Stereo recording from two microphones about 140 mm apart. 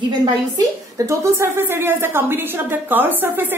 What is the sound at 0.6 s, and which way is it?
A woman's voice, 20° right (ahead or behind).